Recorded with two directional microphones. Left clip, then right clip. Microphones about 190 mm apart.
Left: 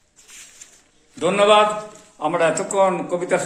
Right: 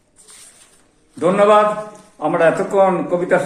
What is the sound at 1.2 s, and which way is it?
A man's voice, 10° left (ahead or behind).